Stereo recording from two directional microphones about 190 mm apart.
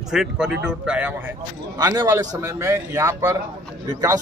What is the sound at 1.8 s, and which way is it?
Speech, 20° right (ahead or behind).